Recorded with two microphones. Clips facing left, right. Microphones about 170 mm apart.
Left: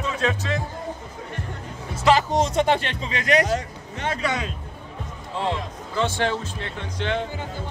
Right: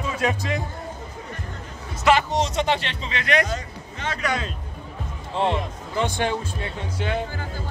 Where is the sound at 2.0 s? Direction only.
35° left (ahead or behind).